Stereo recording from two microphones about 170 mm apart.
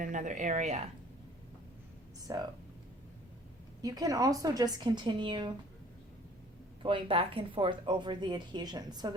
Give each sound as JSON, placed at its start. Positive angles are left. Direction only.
{"t": 0.0, "sound": "speech", "side_deg": -50}
{"t": 2.3, "sound": "speech", "side_deg": -20}
{"t": 3.8, "sound": "speech", "side_deg": -20}
{"t": 6.8, "sound": "speech", "side_deg": -30}